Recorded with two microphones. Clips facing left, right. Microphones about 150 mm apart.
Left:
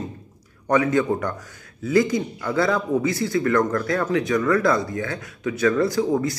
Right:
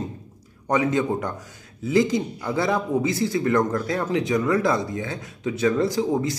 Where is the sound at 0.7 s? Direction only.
20° right (ahead or behind).